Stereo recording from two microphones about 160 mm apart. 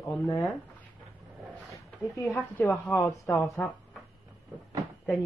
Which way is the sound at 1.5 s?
20° left (ahead or behind).